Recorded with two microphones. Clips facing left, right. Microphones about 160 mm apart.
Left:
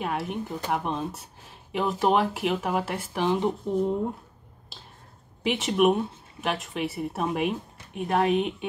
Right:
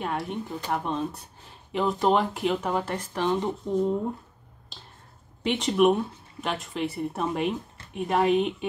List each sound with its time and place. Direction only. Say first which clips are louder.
0.0 s speech: left 1 dB; 5° left (ahead or behind)
5.4 s speech: right 1 dB; 5° left (ahead or behind)